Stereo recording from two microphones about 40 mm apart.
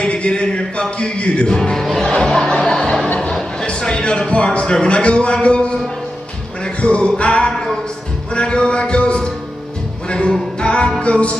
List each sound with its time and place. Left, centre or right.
0.0 s music: left
2.6 s chuckle: centre
3.6 s a man's voice: left
6.6 s music: left
7.2 s a sound: left
10.0 s music: left